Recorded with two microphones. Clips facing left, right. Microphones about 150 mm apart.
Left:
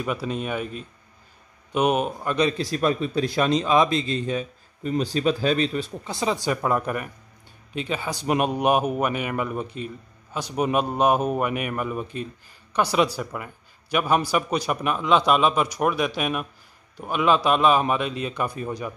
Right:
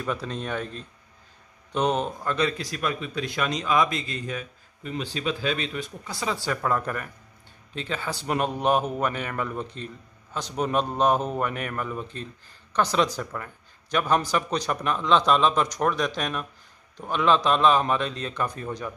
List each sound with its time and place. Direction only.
0.0 s a man's voice: 10° left (ahead or behind); by 4.5 s 25° left (ahead or behind)
4.8 s a man's voice: 40° left (ahead or behind); by 18.9 s 10° left (ahead or behind)